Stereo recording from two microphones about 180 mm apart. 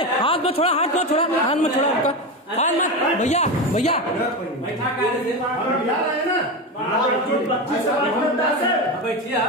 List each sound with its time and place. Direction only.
0.0 s speech: 30° left (ahead or behind)